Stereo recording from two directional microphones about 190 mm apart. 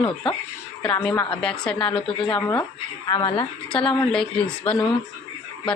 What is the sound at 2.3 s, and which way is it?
Speech, 10° left (ahead or behind).